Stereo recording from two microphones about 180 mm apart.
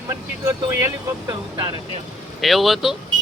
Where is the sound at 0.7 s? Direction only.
15° right (ahead or behind).